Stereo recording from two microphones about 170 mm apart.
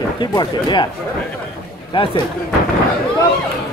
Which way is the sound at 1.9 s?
30° left (ahead or behind).